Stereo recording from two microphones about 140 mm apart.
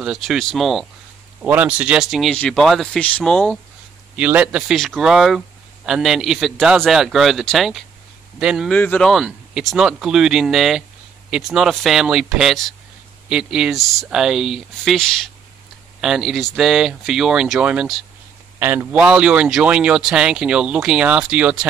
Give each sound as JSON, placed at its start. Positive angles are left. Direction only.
{"t": 0.0, "sound": "speech", "side_deg": -5}
{"t": 4.2, "sound": "speech", "side_deg": -10}
{"t": 8.7, "sound": "speech", "side_deg": 10}